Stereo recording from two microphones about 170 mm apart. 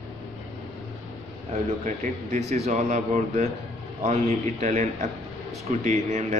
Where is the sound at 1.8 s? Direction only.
45° right (ahead or behind).